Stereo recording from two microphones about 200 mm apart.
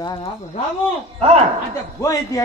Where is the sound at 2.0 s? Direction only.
15° left (ahead or behind).